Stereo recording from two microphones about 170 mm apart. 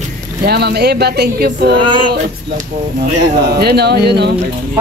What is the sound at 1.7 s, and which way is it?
Male singing, 30° right (ahead or behind).